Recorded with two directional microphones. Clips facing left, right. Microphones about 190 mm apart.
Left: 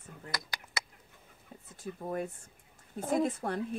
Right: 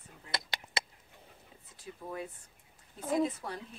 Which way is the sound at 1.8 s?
50° left (ahead or behind).